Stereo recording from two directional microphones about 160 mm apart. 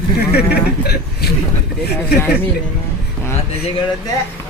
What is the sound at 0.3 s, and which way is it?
Speech, 80° left.